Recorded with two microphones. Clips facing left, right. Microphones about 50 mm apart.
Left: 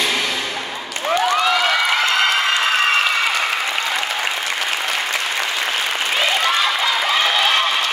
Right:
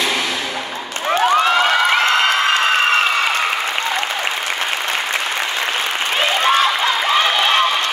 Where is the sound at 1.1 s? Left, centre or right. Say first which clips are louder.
Right 3 dB; right.